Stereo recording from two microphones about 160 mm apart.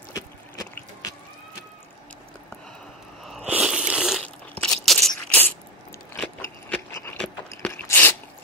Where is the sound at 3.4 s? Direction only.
5° right (ahead or behind).